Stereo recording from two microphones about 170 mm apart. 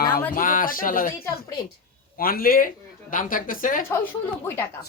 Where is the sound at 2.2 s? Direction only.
60° left (ahead or behind).